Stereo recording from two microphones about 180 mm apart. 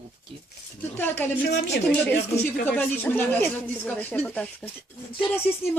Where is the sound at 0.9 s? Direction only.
10° left (ahead or behind).